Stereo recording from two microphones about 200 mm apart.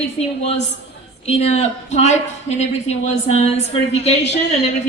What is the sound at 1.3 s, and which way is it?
A woman's voice, 35° left (ahead or behind).